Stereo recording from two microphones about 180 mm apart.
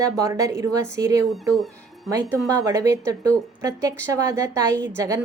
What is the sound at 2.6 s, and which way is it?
A woman's voice, 15° right (ahead or behind).